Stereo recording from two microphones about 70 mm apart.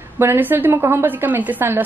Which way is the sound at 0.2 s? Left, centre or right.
Right.